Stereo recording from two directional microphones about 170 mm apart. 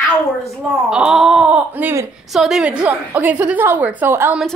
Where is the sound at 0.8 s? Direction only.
5° right (ahead or behind).